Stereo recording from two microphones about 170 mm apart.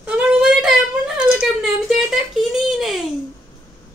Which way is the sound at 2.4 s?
Centre (ahead or behind).